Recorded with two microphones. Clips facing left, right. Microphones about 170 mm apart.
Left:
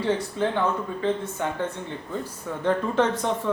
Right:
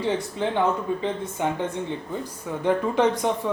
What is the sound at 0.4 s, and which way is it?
Speech, 15° right (ahead or behind).